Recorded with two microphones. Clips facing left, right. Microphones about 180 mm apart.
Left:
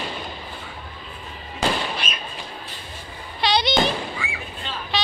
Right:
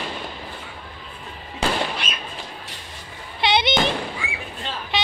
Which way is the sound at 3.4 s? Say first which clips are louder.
Even; 20° right (ahead or behind).